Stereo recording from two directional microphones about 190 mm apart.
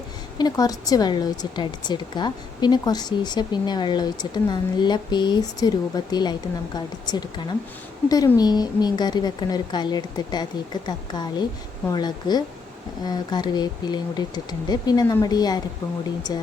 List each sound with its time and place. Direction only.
0.3 s speech: 20° left (ahead or behind)